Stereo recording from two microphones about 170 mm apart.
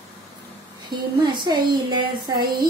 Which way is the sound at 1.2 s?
25° right (ahead or behind).